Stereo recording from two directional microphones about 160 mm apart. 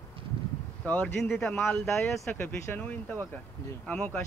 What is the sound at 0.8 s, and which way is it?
Speech, 5° left (ahead or behind).